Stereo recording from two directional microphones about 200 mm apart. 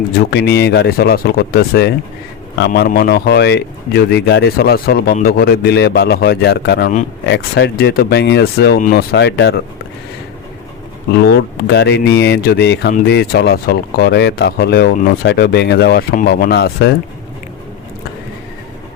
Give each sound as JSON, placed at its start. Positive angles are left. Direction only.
{"t": 0.2, "sound": "speech", "side_deg": 55}
{"t": 9.1, "sound": "speech", "side_deg": 60}
{"t": 11.2, "sound": "speech", "side_deg": 50}